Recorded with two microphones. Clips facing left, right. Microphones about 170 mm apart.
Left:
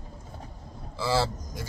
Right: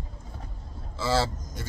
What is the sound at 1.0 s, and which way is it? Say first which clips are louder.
Speech: even; 10° left (ahead or behind).